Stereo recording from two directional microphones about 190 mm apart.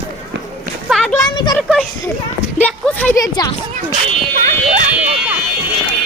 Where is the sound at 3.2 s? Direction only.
20° left (ahead or behind).